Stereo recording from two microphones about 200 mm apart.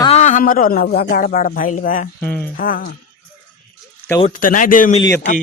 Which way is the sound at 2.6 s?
45° left (ahead or behind).